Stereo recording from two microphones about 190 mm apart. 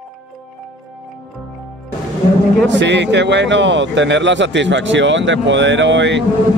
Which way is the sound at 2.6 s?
70° right (ahead or behind).